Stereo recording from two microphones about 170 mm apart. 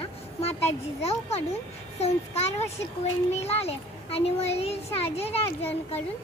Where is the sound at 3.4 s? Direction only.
35° left (ahead or behind).